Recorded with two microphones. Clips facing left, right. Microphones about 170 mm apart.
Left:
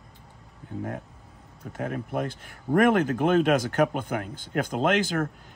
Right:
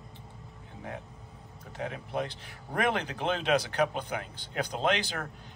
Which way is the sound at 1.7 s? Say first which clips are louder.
Left 4 dB; 50° left (ahead or behind).